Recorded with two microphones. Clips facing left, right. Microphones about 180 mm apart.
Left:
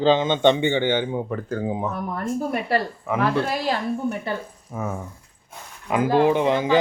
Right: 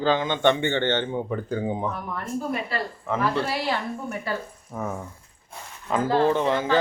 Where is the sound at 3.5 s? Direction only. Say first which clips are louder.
Left 2 dB; 40° left (ahead or behind).